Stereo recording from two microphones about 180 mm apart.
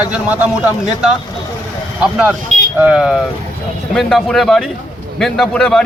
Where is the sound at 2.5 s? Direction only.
40° right (ahead or behind).